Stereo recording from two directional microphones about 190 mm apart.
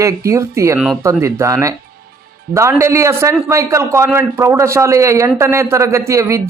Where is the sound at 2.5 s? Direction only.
15° right (ahead or behind).